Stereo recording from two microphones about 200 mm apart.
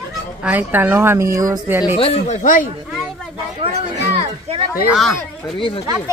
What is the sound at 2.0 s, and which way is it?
Speech, 30° left (ahead or behind).